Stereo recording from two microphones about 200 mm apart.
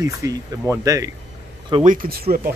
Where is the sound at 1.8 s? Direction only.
45° right (ahead or behind).